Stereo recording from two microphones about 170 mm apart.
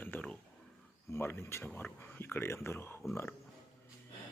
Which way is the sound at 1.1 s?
15° left (ahead or behind).